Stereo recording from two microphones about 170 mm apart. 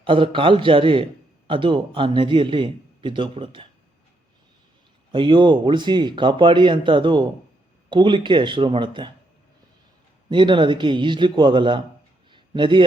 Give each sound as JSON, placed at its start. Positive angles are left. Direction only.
{"t": 0.0, "sound": "a man's voice", "side_deg": -30}
{"t": 5.1, "sound": "speech", "side_deg": -30}
{"t": 10.2, "sound": "speech", "side_deg": -30}
{"t": 12.3, "sound": "a sound", "side_deg": -30}